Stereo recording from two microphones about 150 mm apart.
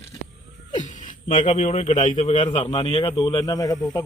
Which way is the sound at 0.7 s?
60° left (ahead or behind).